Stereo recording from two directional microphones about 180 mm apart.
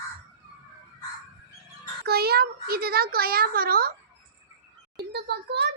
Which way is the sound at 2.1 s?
60° right (ahead or behind).